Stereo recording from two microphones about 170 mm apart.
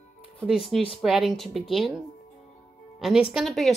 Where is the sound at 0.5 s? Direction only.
Centre (ahead or behind).